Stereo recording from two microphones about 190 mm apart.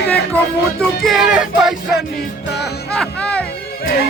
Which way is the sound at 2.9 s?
5° left (ahead or behind).